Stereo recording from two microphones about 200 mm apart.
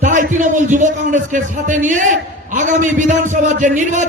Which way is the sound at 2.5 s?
40° right (ahead or behind).